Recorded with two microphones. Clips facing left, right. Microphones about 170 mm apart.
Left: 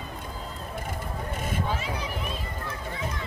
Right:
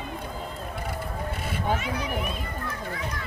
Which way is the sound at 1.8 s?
30° left (ahead or behind).